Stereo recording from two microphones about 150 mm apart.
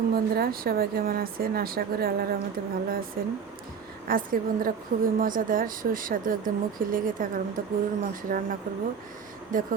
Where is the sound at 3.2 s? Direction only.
75° right (ahead or behind).